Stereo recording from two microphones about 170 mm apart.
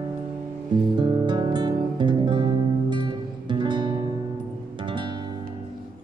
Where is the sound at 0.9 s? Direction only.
25° right (ahead or behind).